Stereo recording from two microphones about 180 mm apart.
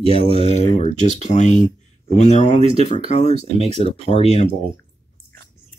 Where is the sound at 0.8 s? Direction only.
40° left (ahead or behind).